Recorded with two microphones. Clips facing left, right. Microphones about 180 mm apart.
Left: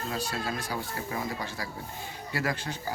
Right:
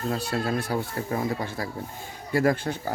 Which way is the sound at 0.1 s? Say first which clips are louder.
Right 7 dB; 60° right (ahead or behind).